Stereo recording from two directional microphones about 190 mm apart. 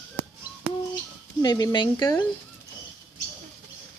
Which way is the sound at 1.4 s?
20° left (ahead or behind).